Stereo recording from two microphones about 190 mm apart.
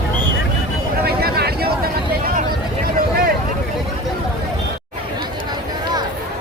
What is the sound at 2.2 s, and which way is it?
Vehicle, 50° right (ahead or behind).